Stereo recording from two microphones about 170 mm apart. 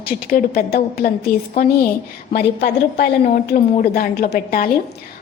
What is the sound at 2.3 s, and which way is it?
A woman's voice, 75° left (ahead or behind).